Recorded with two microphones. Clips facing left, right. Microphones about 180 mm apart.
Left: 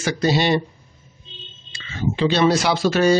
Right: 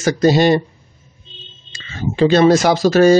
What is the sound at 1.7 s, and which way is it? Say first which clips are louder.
Speech: right 1 dB; 40° right (ahead or behind).